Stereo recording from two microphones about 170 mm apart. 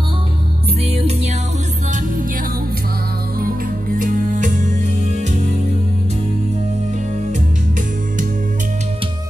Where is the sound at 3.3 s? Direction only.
55° right (ahead or behind).